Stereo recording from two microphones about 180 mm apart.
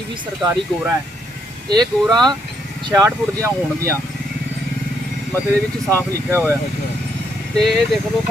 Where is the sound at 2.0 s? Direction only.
Centre (ahead or behind).